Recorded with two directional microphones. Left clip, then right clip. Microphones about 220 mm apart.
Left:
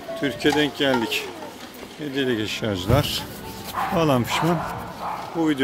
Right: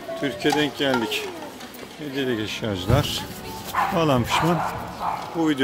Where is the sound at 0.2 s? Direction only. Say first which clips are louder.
Left 1 dB; 15° left (ahead or behind).